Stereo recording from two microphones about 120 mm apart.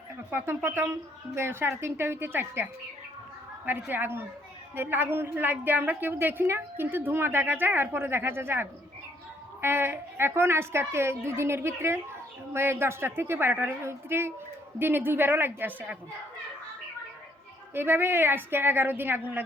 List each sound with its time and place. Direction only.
0.3 s a woman's voice: 20° right (ahead or behind)
3.7 s a woman's voice: 15° right (ahead or behind)
17.7 s a woman's voice: 20° right (ahead or behind)